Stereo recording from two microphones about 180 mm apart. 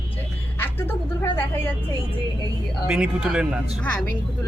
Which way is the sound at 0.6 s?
10° left (ahead or behind).